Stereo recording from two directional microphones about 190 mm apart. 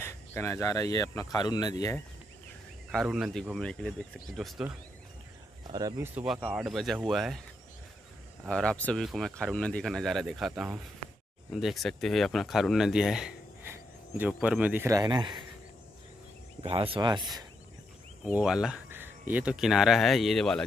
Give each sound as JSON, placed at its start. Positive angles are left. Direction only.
{"t": 0.0, "sound": "speech", "side_deg": 15}
{"t": 2.9, "sound": "speech", "side_deg": 0}
{"t": 5.7, "sound": "speech", "side_deg": -20}
{"t": 6.1, "sound": "speech", "side_deg": -5}
{"t": 8.5, "sound": "speech", "side_deg": 5}
{"t": 11.0, "sound": "a sound", "side_deg": -40}
{"t": 11.5, "sound": "speech", "side_deg": 0}
{"t": 16.6, "sound": "speech", "side_deg": -30}
{"t": 18.2, "sound": "speech", "side_deg": -5}